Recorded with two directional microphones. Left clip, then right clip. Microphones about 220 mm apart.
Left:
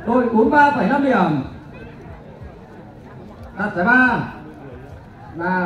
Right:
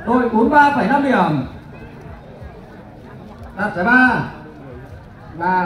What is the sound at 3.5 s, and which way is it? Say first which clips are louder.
Speech: right 1 dB; 45° right (ahead or behind).